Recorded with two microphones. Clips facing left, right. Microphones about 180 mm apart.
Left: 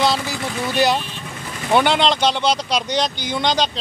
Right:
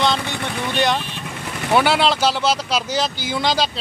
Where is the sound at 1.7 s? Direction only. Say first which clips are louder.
Even; 5° right (ahead or behind).